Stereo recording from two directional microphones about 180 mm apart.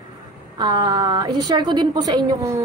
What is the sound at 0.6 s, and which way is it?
A woman's voice, 25° right (ahead or behind).